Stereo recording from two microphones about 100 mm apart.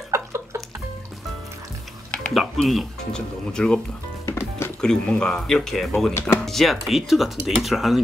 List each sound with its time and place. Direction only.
0.1 s a sound: 30° right (ahead or behind)
2.0 s speech: 5° left (ahead or behind)
4.3 s music: 25° left (ahead or behind)
4.8 s speech: 5° left (ahead or behind)